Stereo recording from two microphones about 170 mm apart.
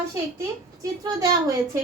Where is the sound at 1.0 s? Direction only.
20° right (ahead or behind).